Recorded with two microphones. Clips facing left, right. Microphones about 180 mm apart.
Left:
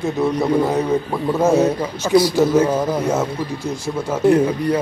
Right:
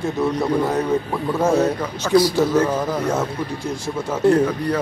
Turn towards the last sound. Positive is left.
turn(degrees=20)  # may be behind; listen again after turning